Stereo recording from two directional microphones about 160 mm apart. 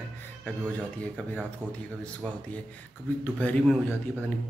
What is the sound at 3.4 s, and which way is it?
Speech, 5° left (ahead or behind).